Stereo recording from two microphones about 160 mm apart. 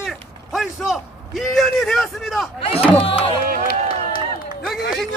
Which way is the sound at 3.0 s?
35° left (ahead or behind).